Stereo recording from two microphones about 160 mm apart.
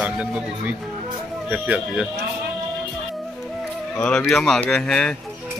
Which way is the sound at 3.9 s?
5° left (ahead or behind).